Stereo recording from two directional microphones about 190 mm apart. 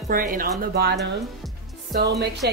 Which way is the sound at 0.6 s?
55° right (ahead or behind).